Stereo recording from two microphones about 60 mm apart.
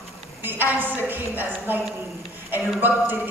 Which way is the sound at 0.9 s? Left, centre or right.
Right.